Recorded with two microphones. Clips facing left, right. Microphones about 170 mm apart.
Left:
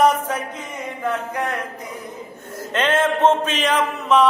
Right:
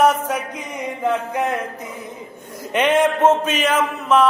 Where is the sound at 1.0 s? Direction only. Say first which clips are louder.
Right 3 dB; 20° right (ahead or behind).